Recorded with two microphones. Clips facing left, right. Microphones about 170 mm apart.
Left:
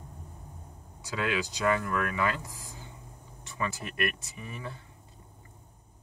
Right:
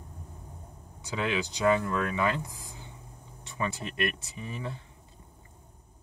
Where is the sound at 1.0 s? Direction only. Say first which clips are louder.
Right 1 dB; 20° right (ahead or behind).